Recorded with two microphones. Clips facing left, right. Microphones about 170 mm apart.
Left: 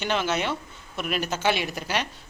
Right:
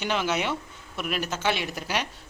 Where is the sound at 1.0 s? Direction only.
Centre (ahead or behind).